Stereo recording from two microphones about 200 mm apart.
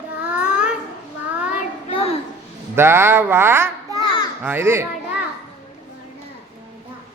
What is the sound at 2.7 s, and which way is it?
A child's voice, 10° right (ahead or behind).